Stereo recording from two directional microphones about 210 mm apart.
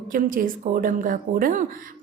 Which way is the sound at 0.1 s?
40° right (ahead or behind).